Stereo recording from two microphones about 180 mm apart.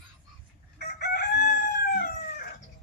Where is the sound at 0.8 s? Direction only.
60° left (ahead or behind).